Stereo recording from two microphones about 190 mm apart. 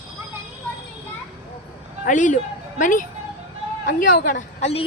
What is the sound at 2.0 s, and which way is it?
A woman's voice, 40° left (ahead or behind).